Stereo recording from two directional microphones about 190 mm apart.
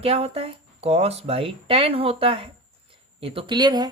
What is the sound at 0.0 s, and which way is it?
Speech, 30° right (ahead or behind).